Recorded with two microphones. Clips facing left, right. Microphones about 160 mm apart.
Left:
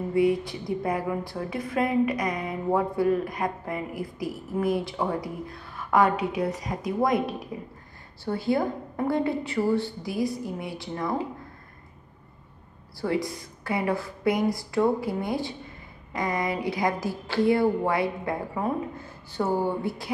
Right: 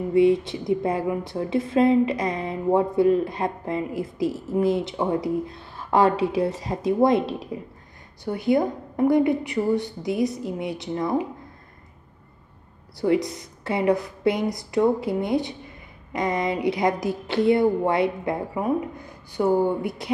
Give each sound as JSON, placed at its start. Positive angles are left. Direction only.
{"t": 0.1, "sound": "speech", "side_deg": -25}
{"t": 13.0, "sound": "speech", "side_deg": -20}